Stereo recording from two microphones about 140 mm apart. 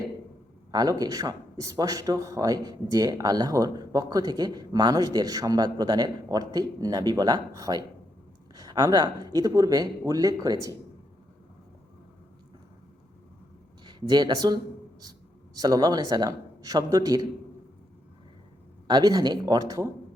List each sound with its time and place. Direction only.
0.7 s speech: 30° right (ahead or behind)
13.8 s speech: 30° right (ahead or behind)
18.9 s speech: 30° right (ahead or behind)